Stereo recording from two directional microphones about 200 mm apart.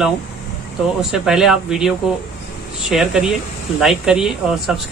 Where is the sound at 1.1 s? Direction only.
Centre (ahead or behind).